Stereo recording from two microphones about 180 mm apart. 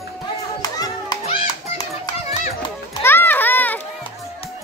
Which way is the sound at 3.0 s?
10° left (ahead or behind).